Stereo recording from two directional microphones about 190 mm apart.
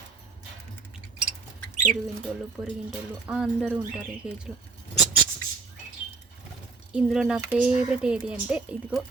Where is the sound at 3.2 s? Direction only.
5° right (ahead or behind).